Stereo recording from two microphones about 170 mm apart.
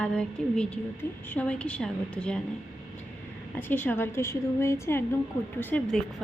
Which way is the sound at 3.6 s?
10° left (ahead or behind).